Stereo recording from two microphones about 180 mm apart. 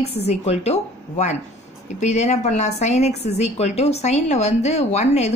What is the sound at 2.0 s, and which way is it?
A woman's voice, 40° left (ahead or behind).